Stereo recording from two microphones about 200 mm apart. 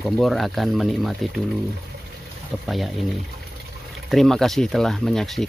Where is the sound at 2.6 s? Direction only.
Centre (ahead or behind).